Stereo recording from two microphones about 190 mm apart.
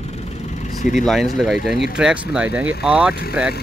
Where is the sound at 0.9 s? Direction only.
Centre (ahead or behind).